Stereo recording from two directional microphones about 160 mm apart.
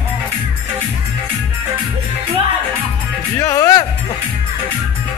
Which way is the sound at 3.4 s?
20° left (ahead or behind).